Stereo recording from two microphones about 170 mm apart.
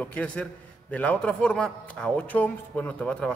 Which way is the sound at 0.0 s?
10° left (ahead or behind).